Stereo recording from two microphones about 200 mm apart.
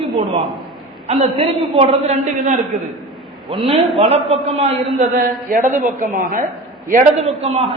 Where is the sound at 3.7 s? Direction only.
30° right (ahead or behind).